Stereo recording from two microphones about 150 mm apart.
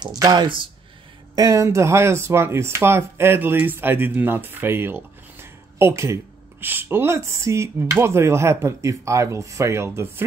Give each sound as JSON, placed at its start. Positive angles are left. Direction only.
{"t": 0.0, "sound": "speech", "side_deg": -25}